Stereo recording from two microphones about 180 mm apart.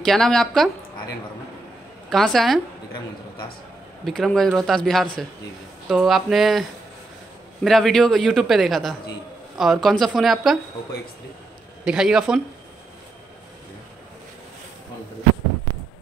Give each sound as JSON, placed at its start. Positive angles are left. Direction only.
{"t": 0.0, "sound": "a man's voice", "side_deg": 0}
{"t": 2.0, "sound": "a man's voice", "side_deg": 0}
{"t": 4.0, "sound": "a man's voice", "side_deg": 0}
{"t": 7.6, "sound": "a man's voice", "side_deg": 0}
{"t": 11.8, "sound": "a man's voice", "side_deg": -5}